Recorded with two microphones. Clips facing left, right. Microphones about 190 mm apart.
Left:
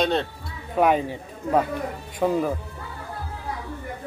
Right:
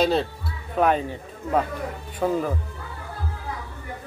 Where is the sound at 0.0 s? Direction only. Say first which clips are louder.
Right 2 dB; 5° right (ahead or behind).